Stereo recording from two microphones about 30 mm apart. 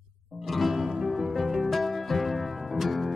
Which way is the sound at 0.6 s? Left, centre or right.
Centre.